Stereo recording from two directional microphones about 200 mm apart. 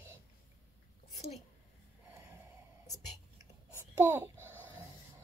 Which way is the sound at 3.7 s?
10° right (ahead or behind).